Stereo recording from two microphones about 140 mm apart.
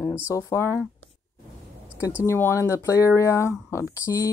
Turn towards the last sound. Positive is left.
turn(degrees=20)  # may be behind; listen again after turning